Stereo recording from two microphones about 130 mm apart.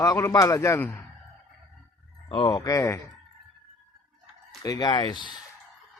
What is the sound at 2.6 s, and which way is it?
Speech, 25° left (ahead or behind).